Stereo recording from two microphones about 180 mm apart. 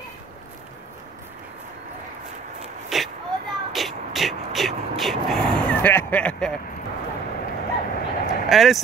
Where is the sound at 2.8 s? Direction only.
Centre (ahead or behind).